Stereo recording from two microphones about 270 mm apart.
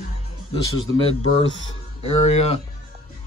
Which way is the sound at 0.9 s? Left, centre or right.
Left.